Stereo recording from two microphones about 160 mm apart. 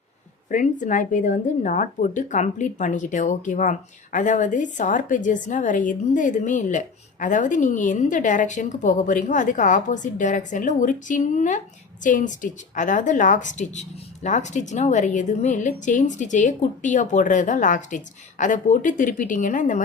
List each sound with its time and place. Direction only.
0.4 s a woman's voice: 55° left (ahead or behind)